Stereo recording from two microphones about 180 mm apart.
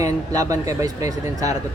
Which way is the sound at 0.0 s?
20° right (ahead or behind).